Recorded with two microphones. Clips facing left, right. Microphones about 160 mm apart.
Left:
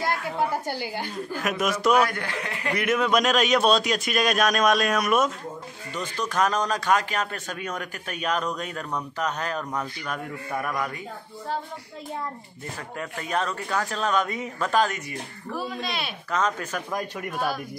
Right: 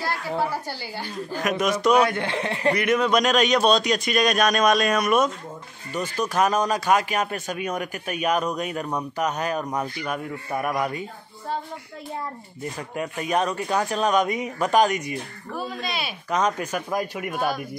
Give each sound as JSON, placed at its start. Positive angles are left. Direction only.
{"t": 0.0, "sound": "a sound", "side_deg": 20}
{"t": 1.4, "sound": "a man's voice", "side_deg": 5}
{"t": 2.0, "sound": "speech", "side_deg": -25}
{"t": 2.7, "sound": "a man's voice", "side_deg": 0}
{"t": 5.9, "sound": "speech", "side_deg": -10}
{"t": 12.7, "sound": "speech", "side_deg": -15}
{"t": 15.8, "sound": "a man's voice", "side_deg": 0}
{"t": 16.3, "sound": "speech", "side_deg": -15}